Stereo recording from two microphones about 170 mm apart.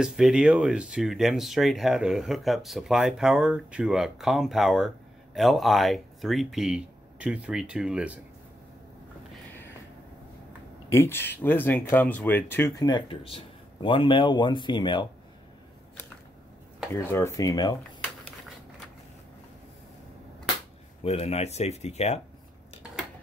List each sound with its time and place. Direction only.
0.0 s speech: 5° right (ahead or behind)
10.9 s speech: 15° left (ahead or behind)
16.9 s speech: 15° left (ahead or behind)
21.0 s speech: 35° left (ahead or behind)